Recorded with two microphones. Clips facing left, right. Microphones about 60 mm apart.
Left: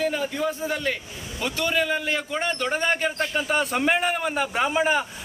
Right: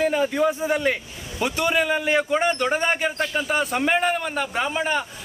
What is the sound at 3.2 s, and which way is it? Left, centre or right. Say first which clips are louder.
A man's voice: right 1 dB; centre.